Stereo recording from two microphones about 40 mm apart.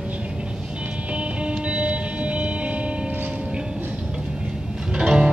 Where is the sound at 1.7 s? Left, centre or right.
Right.